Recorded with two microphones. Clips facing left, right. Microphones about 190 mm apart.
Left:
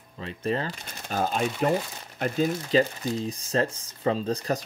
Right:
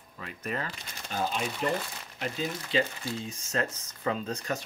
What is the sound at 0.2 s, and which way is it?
Speech, 30° left (ahead or behind).